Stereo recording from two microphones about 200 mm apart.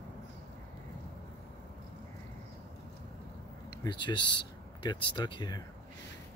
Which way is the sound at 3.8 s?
20° left (ahead or behind).